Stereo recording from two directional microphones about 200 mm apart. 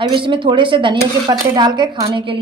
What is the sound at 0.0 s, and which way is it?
A woman's voice, 25° right (ahead or behind).